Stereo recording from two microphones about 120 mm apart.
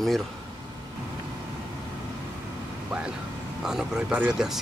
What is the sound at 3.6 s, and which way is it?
A man's voice, 5° right (ahead or behind).